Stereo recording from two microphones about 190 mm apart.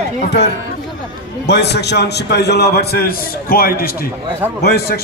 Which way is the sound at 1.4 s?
60° left (ahead or behind).